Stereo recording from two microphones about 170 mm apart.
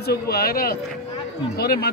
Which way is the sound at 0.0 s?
70° left (ahead or behind).